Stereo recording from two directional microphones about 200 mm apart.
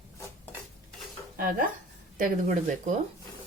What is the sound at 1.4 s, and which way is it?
Speech, 45° right (ahead or behind).